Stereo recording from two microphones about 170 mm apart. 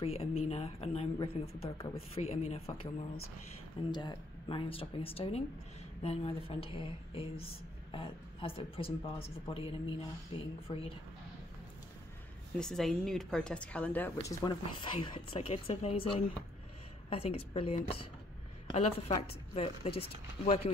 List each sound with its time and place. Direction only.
0.0 s a woman's voice: 35° left (ahead or behind)
12.5 s speech: 5° left (ahead or behind)
14.2 s a woman's voice: 20° left (ahead or behind)